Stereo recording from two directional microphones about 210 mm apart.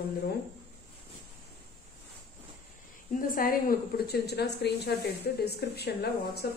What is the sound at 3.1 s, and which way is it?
A woman's voice, 40° left (ahead or behind).